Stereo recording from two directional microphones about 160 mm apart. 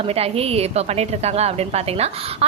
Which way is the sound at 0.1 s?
40° right (ahead or behind).